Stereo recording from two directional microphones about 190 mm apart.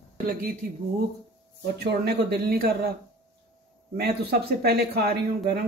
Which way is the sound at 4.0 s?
55° right (ahead or behind).